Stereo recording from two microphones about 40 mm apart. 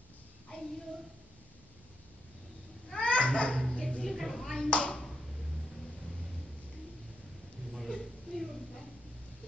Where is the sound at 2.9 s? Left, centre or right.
Left.